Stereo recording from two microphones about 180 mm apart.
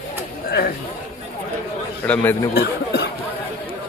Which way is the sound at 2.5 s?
65° left (ahead or behind).